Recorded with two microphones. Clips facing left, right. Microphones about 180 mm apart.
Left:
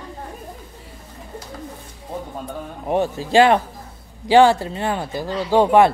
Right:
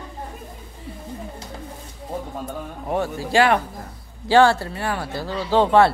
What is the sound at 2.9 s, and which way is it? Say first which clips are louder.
Speech: left 4 dB; 20° left (ahead or behind).